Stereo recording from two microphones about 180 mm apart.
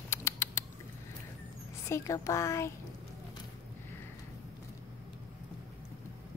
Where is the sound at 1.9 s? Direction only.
15° left (ahead or behind).